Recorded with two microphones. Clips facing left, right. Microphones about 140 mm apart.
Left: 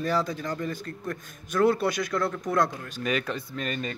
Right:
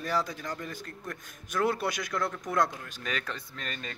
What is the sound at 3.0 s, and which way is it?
Speech, 15° left (ahead or behind).